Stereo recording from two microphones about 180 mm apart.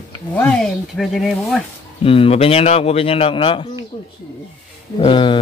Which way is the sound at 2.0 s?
30° left (ahead or behind).